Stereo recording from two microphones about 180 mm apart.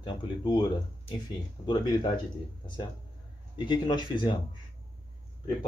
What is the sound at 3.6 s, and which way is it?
Speech, 25° left (ahead or behind).